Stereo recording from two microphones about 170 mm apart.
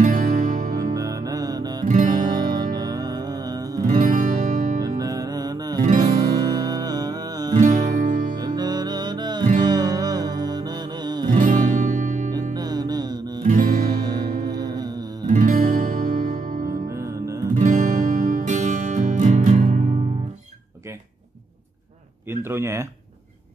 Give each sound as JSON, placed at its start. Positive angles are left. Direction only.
{"t": 0.0, "sound": "music", "side_deg": -50}
{"t": 0.9, "sound": "music", "side_deg": -20}
{"t": 4.0, "sound": "music", "side_deg": -50}
{"t": 4.8, "sound": "music", "side_deg": -20}
{"t": 7.5, "sound": "music", "side_deg": -50}
{"t": 8.4, "sound": "music", "side_deg": -25}
{"t": 11.3, "sound": "music", "side_deg": -50}
{"t": 12.5, "sound": "music", "side_deg": -25}
{"t": 13.5, "sound": "music", "side_deg": -50}
{"t": 13.8, "sound": "music", "side_deg": -25}
{"t": 15.2, "sound": "music", "side_deg": -50}
{"t": 16.9, "sound": "music", "side_deg": -20}
{"t": 17.6, "sound": "music", "side_deg": -50}
{"t": 22.3, "sound": "a sound", "side_deg": -15}